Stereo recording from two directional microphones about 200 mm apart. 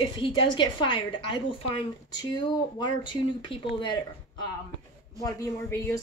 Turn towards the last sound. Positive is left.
turn(degrees=15)  # may be behind; listen again after turning